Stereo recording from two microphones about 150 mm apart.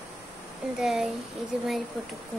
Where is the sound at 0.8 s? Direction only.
Centre (ahead or behind).